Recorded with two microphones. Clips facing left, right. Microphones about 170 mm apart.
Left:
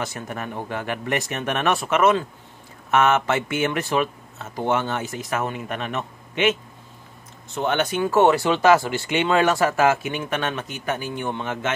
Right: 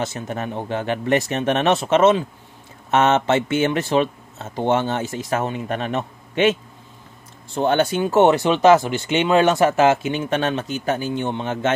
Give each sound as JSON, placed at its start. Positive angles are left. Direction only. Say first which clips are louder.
{"t": 0.0, "sound": "speech", "louder": "right 4 dB", "side_deg": -25}